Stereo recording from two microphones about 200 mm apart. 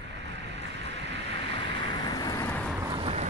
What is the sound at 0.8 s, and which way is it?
Boat, 60° right (ahead or behind).